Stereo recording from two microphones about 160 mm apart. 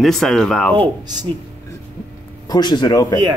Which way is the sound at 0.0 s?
Centre (ahead or behind).